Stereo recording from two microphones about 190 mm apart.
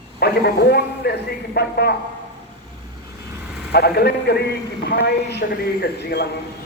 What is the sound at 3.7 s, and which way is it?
A man's voice, 60° left (ahead or behind).